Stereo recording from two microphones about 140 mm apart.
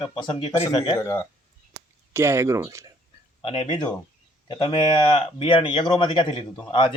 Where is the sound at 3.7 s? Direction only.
30° left (ahead or behind).